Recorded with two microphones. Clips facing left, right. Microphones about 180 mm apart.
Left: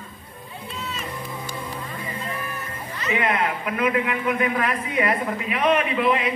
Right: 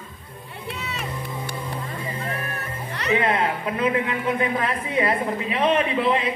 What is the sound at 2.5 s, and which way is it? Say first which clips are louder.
Music: right 2 dB; 65° right (ahead or behind).